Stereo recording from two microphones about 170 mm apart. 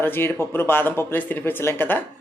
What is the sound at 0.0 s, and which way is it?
Speech, 10° left (ahead or behind).